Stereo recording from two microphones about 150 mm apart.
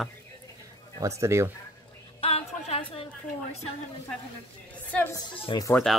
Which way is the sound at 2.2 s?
40° left (ahead or behind).